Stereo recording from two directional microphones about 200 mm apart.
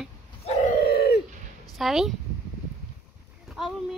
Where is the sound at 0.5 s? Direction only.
40° left (ahead or behind); by 1.2 s 55° left (ahead or behind).